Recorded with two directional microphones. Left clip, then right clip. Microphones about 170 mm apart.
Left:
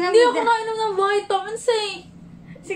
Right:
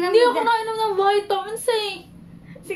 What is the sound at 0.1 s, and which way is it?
A woman's voice, 10° right (ahead or behind).